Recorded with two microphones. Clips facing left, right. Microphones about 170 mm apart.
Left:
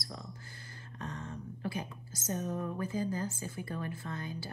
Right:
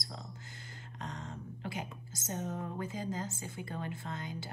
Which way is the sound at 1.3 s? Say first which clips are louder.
Left 3 dB; 25° right (ahead or behind).